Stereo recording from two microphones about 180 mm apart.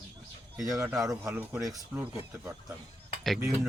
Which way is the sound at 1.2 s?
5° right (ahead or behind).